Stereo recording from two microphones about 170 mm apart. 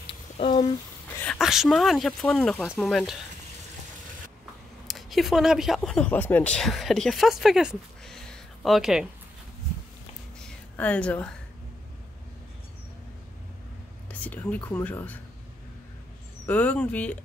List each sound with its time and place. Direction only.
0.4 s speech: 35° left (ahead or behind)
1.2 s speech: centre (ahead or behind)
4.8 s speech: centre (ahead or behind)
10.4 s a sound: 5° left (ahead or behind)
14.2 s speech: 10° left (ahead or behind)
16.4 s speech: 10° left (ahead or behind)